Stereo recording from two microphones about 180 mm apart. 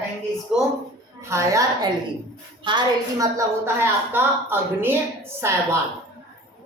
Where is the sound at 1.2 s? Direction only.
15° right (ahead or behind).